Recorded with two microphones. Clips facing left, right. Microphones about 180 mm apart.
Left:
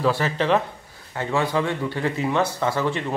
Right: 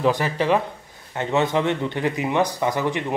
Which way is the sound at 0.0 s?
15° right (ahead or behind).